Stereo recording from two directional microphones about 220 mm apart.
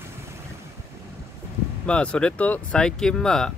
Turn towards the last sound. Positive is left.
turn(degrees=0)  # may be behind; listen again after turning